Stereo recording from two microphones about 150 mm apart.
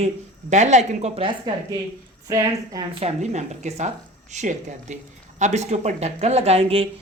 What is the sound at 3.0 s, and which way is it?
Speech, 50° right (ahead or behind).